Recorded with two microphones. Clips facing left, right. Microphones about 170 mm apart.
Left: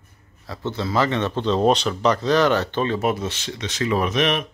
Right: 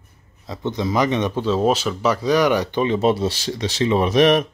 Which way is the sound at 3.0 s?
30° right (ahead or behind).